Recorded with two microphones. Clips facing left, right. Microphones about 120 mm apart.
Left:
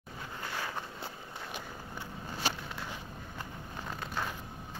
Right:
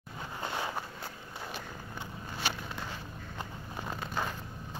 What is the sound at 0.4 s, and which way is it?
Vehicle, 20° right (ahead or behind).